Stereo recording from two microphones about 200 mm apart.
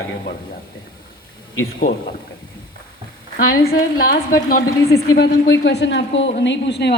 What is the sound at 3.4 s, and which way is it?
Speech, 45° left (ahead or behind).